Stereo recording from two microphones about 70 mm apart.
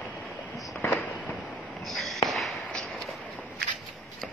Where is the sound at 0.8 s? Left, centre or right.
Left.